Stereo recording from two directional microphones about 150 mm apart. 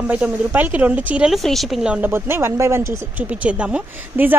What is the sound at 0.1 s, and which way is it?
A woman's voice, 10° right (ahead or behind).